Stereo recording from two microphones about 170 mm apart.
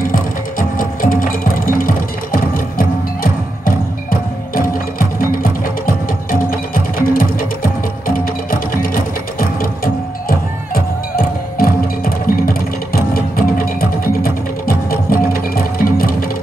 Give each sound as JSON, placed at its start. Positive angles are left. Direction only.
{"t": 0.0, "sound": "music", "side_deg": 55}